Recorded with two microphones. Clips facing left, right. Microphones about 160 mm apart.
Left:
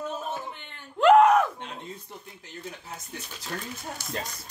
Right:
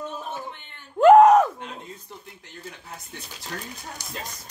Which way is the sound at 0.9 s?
30° right (ahead or behind).